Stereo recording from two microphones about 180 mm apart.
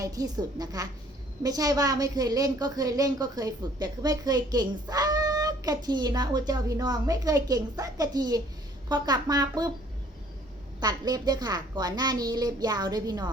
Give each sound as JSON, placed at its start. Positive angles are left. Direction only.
{"t": 0.0, "sound": "a woman's voice", "side_deg": -20}
{"t": 10.8, "sound": "a woman's voice", "side_deg": -20}